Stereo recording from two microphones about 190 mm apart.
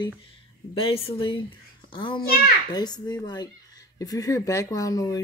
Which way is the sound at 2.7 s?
20° left (ahead or behind).